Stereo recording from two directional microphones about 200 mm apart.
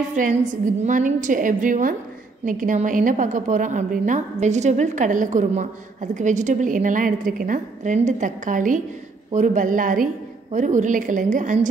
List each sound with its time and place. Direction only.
0.1 s a woman's voice: 40° right (ahead or behind)